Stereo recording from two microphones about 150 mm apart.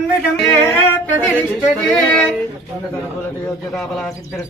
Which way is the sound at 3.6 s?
Centre (ahead or behind).